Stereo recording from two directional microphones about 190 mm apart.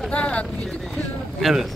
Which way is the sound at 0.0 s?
5° left (ahead or behind).